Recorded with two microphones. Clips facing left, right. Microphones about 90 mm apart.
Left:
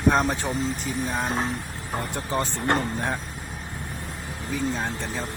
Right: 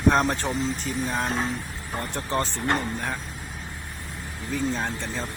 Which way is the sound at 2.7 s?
25° left (ahead or behind).